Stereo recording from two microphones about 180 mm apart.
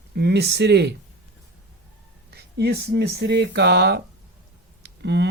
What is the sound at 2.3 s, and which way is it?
Speech, 65° right (ahead or behind).